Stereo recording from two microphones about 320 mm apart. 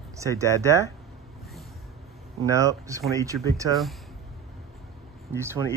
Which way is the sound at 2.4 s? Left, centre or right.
Centre.